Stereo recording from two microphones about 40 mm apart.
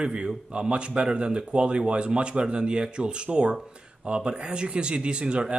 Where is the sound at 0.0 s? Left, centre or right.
Right.